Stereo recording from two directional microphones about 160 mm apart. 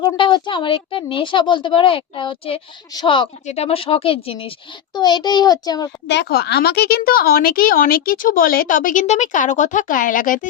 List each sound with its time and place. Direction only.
0.0 s a woman's voice: 30° left (ahead or behind)
3.4 s a woman's voice: 40° left (ahead or behind); by 5.9 s 25° left (ahead or behind)
6.1 s speech: 85° left; by 10.5 s 55° left (ahead or behind)